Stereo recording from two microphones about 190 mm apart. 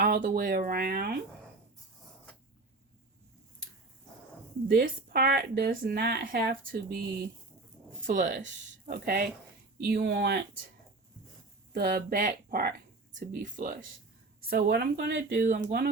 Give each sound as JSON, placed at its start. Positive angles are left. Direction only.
{"t": 0.0, "sound": "speech", "side_deg": -60}
{"t": 0.4, "sound": "speech", "side_deg": -50}
{"t": 4.7, "sound": "speech", "side_deg": -55}
{"t": 8.0, "sound": "speech", "side_deg": -45}
{"t": 11.7, "sound": "speech", "side_deg": -50}
{"t": 14.5, "sound": "speech", "side_deg": -60}
{"t": 15.3, "sound": "speech", "side_deg": -40}